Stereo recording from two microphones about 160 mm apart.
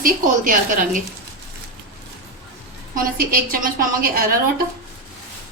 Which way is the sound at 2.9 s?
65° right (ahead or behind).